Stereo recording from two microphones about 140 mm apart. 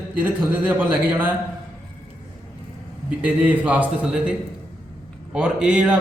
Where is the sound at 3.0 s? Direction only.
10° right (ahead or behind).